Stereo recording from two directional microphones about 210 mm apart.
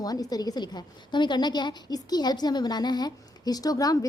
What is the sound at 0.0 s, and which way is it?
A woman's voice, 15° left (ahead or behind).